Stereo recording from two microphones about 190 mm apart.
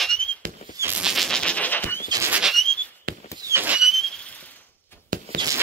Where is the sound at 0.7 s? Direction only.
10° right (ahead or behind); by 2.0 s 10° left (ahead or behind).